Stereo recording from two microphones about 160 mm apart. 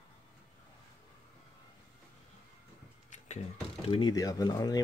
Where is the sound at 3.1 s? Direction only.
45° left (ahead or behind).